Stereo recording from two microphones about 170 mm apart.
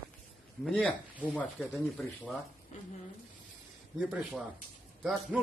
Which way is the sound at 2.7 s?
45° left (ahead or behind).